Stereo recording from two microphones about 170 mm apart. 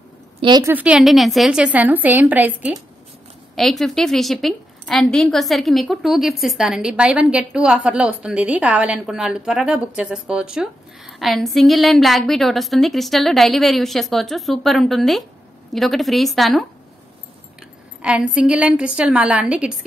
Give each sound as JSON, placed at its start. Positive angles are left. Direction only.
{"t": 0.4, "sound": "a woman's voice", "side_deg": -25}
{"t": 0.7, "sound": "a woman's voice", "side_deg": -5}
{"t": 3.5, "sound": "a woman's voice", "side_deg": 0}
{"t": 18.0, "sound": "a woman's voice", "side_deg": -5}